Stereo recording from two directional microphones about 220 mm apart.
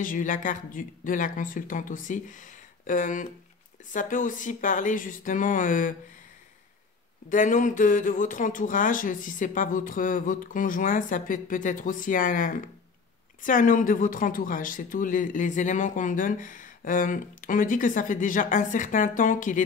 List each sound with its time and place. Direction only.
0.0 s speech: 35° left (ahead or behind)
7.2 s speech: 35° left (ahead or behind)